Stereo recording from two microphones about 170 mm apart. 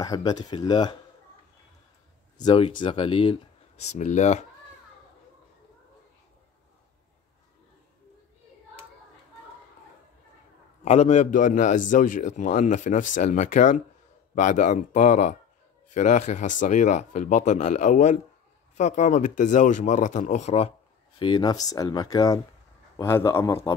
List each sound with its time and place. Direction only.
0.0 s speech: 20° left (ahead or behind)
2.3 s speech: 30° left (ahead or behind)
10.8 s a man's voice: 40° left (ahead or behind)
21.2 s speech: 25° left (ahead or behind)